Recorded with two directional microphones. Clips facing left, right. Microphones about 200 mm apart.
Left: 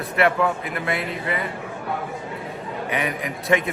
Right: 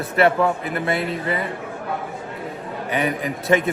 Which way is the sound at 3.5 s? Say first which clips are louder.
Right 2 dB; 35° right (ahead or behind).